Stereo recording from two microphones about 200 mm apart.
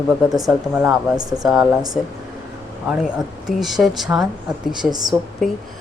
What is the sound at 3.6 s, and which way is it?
Speech, centre (ahead or behind).